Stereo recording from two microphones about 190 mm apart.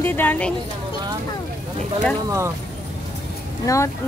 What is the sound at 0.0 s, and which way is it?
Speech, 10° left (ahead or behind).